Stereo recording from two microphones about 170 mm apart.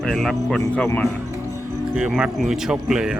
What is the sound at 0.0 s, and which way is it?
Speech, centre (ahead or behind).